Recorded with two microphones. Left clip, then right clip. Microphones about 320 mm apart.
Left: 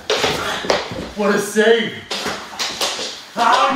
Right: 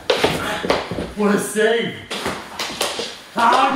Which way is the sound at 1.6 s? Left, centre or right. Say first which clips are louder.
Left 4 dB; centre.